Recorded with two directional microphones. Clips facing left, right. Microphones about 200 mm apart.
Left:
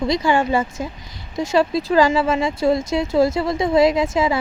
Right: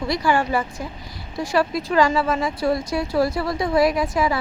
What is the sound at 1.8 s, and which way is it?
Speech, 35° left (ahead or behind).